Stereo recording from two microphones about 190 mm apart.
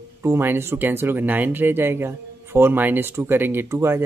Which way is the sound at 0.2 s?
10° right (ahead or behind).